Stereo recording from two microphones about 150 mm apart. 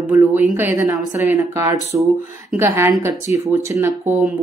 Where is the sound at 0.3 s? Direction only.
10° right (ahead or behind).